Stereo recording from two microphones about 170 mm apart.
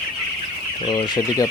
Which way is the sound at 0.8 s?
25° left (ahead or behind).